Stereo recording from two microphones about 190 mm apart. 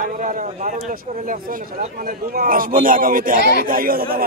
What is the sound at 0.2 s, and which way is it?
A man's voice, 45° right (ahead or behind).